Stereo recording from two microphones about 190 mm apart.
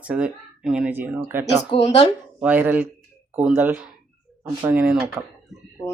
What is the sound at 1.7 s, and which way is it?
Speech, 35° left (ahead or behind).